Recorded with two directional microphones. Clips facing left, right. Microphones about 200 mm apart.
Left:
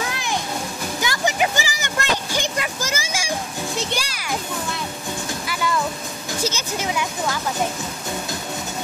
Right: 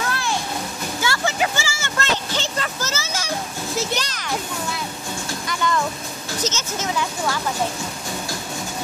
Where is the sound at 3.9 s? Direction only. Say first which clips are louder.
Right 1 dB; 10° left (ahead or behind).